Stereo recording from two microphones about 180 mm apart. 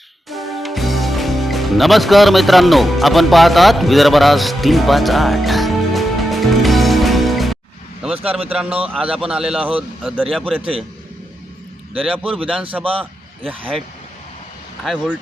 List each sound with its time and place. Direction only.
0.3 s music: centre (ahead or behind)
8.3 s a man's voice: 10° right (ahead or behind)
11.9 s speech: 5° right (ahead or behind)
12.8 s a man's voice: 30° right (ahead or behind)
13.4 s speech: 10° right (ahead or behind)